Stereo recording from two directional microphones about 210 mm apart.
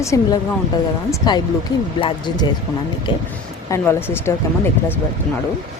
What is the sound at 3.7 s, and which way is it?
Speech, 10° left (ahead or behind).